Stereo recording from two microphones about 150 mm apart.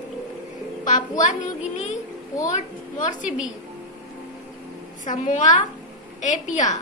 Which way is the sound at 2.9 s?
55° left (ahead or behind).